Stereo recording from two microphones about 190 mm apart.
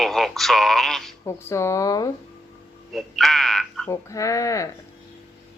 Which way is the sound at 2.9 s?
Centre (ahead or behind).